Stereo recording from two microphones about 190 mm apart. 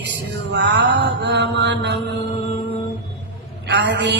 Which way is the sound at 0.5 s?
65° right (ahead or behind).